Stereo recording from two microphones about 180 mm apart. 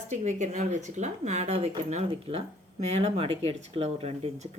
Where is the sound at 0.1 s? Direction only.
40° right (ahead or behind).